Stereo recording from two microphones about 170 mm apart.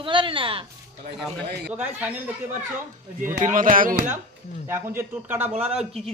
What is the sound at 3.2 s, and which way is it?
Speech, 50° right (ahead or behind).